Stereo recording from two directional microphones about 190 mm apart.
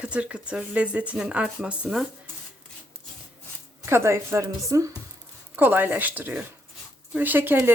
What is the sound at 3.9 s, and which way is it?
Speech, 15° right (ahead or behind).